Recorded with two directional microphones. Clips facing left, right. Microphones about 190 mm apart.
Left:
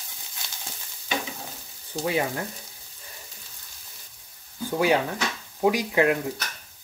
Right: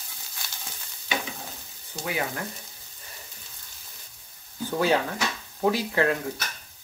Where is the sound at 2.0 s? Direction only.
25° left (ahead or behind).